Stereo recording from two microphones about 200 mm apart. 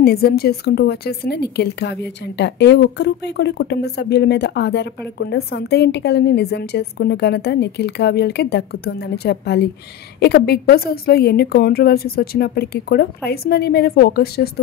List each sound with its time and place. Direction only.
0.0 s a woman's voice: 50° left (ahead or behind)